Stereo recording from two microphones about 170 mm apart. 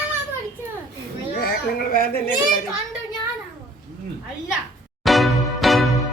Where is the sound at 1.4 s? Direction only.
65° left (ahead or behind).